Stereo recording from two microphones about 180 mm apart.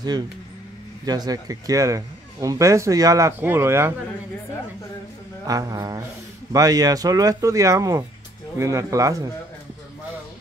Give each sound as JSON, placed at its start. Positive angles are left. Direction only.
{"t": 1.0, "sound": "speech", "side_deg": -20}
{"t": 5.5, "sound": "speech", "side_deg": -20}